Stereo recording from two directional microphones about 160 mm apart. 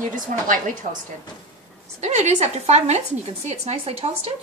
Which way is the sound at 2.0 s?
45° right (ahead or behind).